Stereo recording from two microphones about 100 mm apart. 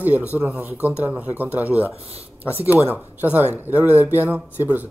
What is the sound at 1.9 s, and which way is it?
Speech, 90° right.